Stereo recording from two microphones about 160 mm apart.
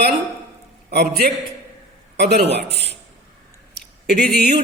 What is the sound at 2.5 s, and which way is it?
Speech, 90° right.